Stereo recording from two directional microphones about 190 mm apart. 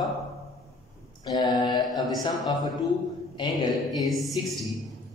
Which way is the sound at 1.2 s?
20° left (ahead or behind).